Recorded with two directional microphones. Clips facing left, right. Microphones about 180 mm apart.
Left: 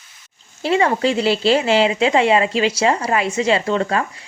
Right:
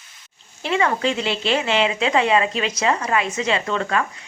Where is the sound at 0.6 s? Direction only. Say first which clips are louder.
Left 4 dB; 30° left (ahead or behind).